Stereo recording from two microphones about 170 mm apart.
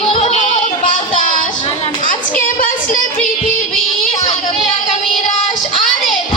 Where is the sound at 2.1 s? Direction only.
50° left (ahead or behind).